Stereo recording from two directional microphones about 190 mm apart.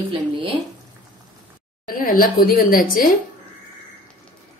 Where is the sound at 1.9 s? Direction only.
50° left (ahead or behind).